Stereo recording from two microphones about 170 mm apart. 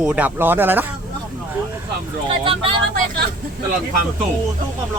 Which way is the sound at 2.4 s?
30° right (ahead or behind).